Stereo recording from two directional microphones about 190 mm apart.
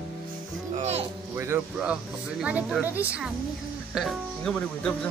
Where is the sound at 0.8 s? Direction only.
35° right (ahead or behind).